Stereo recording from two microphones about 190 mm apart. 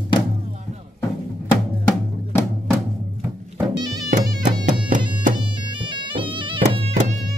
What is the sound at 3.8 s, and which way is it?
Music, 20° right (ahead or behind).